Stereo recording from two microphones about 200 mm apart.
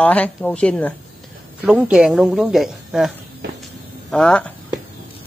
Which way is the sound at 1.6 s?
5° right (ahead or behind).